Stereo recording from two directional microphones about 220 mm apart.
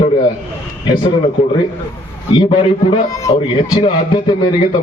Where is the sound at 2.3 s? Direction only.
20° left (ahead or behind).